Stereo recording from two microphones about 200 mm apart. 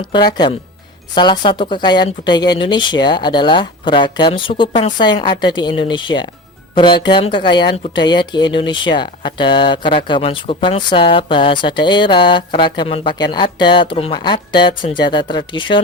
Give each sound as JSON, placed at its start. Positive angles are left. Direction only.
{"t": 0.0, "sound": "speech", "side_deg": 20}